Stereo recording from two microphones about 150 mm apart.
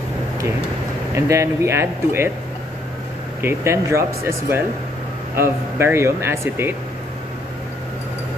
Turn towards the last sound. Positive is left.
turn(degrees=-15)  # may be behind; listen again after turning